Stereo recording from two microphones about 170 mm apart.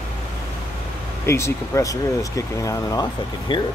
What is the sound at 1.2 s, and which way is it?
Speech, 15° left (ahead or behind).